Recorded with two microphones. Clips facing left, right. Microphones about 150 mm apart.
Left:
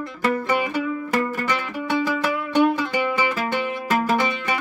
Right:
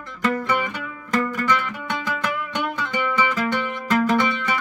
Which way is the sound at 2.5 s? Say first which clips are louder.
Left 8 dB; 35° left (ahead or behind).